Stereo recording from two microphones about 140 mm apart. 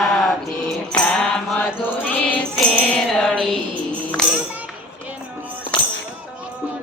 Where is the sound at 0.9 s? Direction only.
5° left (ahead or behind).